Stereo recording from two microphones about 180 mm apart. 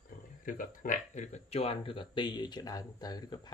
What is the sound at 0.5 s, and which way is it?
Speech, 45° left (ahead or behind).